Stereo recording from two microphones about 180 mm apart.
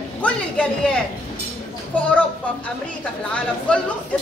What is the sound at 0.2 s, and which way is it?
Speech, 5° left (ahead or behind).